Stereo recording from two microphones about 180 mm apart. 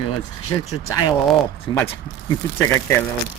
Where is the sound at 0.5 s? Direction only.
15° left (ahead or behind).